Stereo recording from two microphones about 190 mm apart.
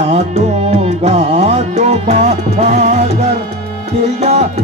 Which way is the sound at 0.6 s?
30° right (ahead or behind).